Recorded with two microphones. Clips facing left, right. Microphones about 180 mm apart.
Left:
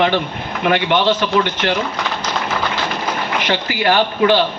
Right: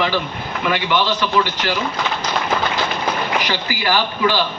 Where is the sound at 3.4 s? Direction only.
55° left (ahead or behind).